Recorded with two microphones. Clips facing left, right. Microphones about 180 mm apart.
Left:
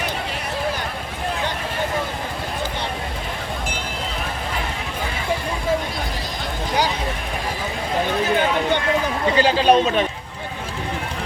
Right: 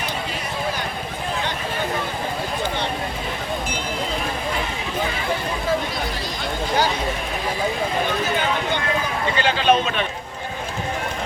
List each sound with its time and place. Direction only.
9.4 s a man's voice: 35° left (ahead or behind)